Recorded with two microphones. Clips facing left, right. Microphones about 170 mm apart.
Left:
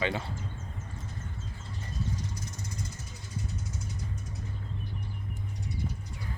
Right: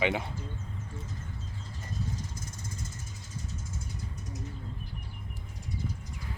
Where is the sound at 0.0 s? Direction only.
15° right (ahead or behind).